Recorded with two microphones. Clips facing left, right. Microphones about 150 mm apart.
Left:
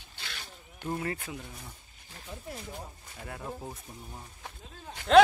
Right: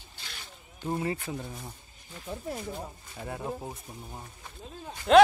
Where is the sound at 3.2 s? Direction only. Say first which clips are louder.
Right 4 dB; 25° right (ahead or behind).